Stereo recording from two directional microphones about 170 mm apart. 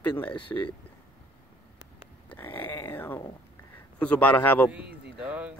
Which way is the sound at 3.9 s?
10° left (ahead or behind).